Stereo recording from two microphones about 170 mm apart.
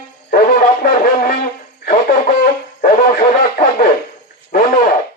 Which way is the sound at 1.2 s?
60° left (ahead or behind).